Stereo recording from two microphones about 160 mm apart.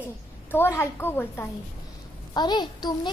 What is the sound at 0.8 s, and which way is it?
Speech, 15° left (ahead or behind).